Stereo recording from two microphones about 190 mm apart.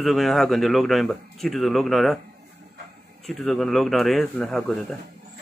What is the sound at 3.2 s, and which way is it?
Speech, centre (ahead or behind).